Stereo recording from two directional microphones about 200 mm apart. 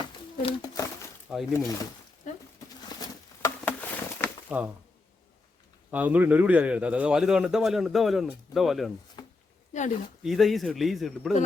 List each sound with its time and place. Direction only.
0.0 s a sound: 20° left (ahead or behind)
1.3 s a man's voice: centre (ahead or behind)
3.0 s patter: 10° left (ahead or behind)
4.4 s speech: 5° right (ahead or behind)
5.9 s a man's voice: 10° right (ahead or behind)
9.2 s a sound: 20° left (ahead or behind)
9.7 s speech: 35° left (ahead or behind)
10.2 s a man's voice: centre (ahead or behind)